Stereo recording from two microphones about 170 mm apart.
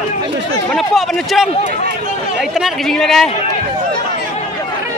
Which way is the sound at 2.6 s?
Centre (ahead or behind).